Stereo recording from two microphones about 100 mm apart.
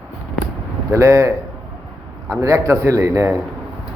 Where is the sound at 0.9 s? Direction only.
30° right (ahead or behind).